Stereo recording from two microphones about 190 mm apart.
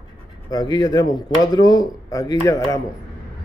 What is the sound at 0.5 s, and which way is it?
Speech, 20° left (ahead or behind).